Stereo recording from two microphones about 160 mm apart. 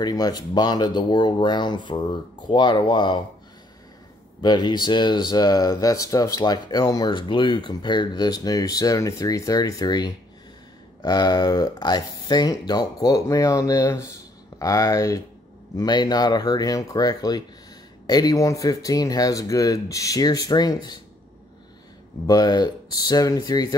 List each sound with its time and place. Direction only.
0.0 s speech: 25° left (ahead or behind)
4.4 s speech: 25° left (ahead or behind)
22.2 s speech: 25° left (ahead or behind)